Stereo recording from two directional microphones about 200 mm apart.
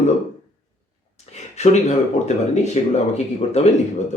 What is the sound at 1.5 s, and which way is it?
Speech, 35° left (ahead or behind).